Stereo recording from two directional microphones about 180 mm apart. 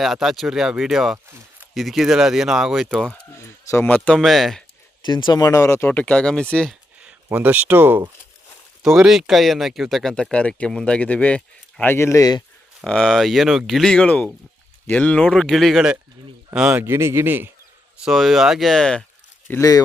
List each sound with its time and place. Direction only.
0.0 s speech: centre (ahead or behind)
3.3 s speech: 15° left (ahead or behind)
5.0 s speech: 25° left (ahead or behind); by 6.7 s 5° left (ahead or behind)
7.0 s speech: 10° right (ahead or behind); by 12.4 s 20° left (ahead or behind)
12.8 s speech: centre (ahead or behind)
18.0 s speech: centre (ahead or behind)
19.5 s speech: 15° left (ahead or behind)